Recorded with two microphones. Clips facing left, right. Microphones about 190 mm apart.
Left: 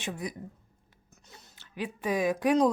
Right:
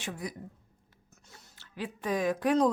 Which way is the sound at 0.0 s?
20° left (ahead or behind).